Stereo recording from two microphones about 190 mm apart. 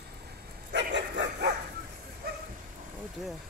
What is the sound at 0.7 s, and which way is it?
Dog, 70° right (ahead or behind).